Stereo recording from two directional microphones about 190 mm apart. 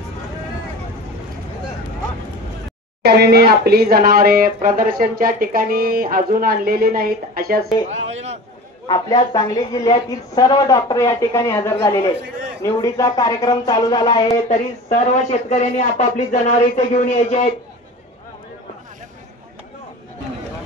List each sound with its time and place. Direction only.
3.0 s speech: 60° right (ahead or behind)
7.9 s a man's voice: 35° right (ahead or behind)
8.8 s a woman's voice: 25° left (ahead or behind)
14.5 s speech: 40° left (ahead or behind)